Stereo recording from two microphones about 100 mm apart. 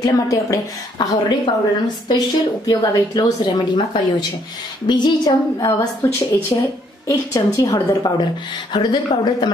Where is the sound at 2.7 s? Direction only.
40° left (ahead or behind).